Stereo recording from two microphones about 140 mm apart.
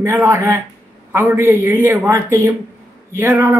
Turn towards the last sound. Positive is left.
turn(degrees=-15)  # may be behind; listen again after turning